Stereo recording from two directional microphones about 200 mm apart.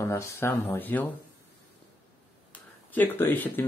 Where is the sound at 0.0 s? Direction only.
15° left (ahead or behind).